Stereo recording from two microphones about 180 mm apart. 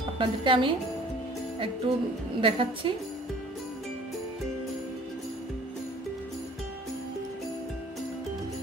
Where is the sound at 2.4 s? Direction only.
30° right (ahead or behind).